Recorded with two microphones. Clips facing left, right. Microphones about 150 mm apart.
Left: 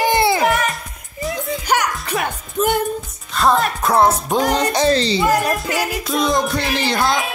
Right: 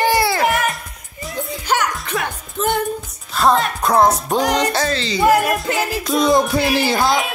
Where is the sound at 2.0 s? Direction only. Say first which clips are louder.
Left 1 dB; centre (ahead or behind).